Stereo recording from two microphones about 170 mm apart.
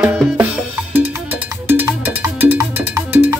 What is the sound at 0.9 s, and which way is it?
Cowbell, 10° right (ahead or behind).